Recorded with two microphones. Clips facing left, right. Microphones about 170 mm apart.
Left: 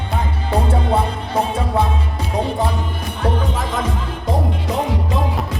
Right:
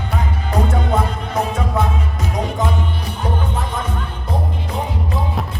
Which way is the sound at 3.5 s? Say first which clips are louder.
Left 2 dB; 90° left.